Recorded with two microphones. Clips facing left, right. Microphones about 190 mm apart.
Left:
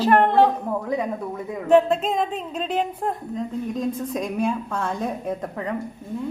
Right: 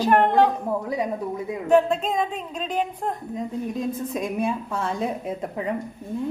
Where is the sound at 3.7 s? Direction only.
5° right (ahead or behind).